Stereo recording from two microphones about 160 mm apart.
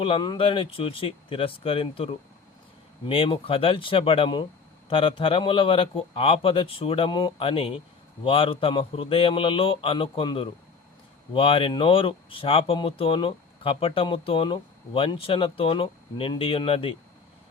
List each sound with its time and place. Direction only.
0.0 s speech: 30° left (ahead or behind)